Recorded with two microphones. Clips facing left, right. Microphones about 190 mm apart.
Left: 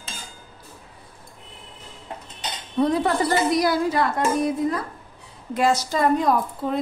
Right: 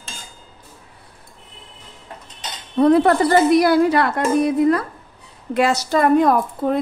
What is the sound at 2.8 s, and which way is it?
Speech, 60° right (ahead or behind).